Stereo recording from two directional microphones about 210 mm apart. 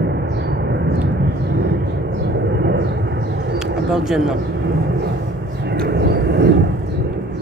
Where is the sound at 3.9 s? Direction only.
Centre (ahead or behind).